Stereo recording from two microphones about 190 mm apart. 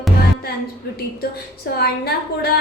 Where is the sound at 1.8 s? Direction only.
55° left (ahead or behind).